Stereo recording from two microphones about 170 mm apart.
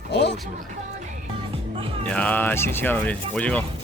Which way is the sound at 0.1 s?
90° left.